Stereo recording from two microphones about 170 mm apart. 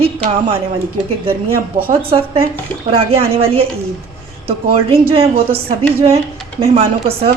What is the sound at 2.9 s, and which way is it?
A woman's voice, 35° right (ahead or behind).